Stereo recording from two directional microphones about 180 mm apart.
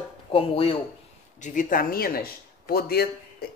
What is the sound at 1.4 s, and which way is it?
Speech, 50° left (ahead or behind).